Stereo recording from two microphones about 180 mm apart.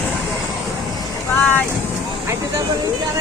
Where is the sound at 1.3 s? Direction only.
10° left (ahead or behind).